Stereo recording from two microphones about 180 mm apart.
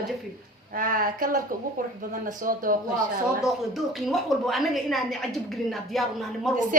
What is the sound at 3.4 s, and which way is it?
Speech, centre (ahead or behind).